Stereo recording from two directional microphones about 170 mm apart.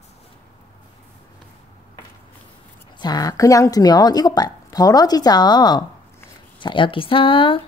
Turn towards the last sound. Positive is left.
turn(degrees=30)  # may be behind; listen again after turning